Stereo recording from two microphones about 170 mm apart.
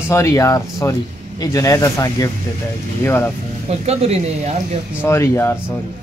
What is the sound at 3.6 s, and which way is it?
Speech, 40° right (ahead or behind).